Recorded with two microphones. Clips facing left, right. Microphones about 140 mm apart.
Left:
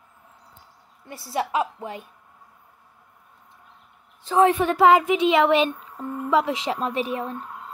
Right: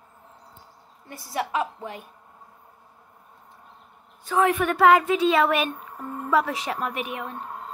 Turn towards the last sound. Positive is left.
turn(degrees=35)  # may be behind; listen again after turning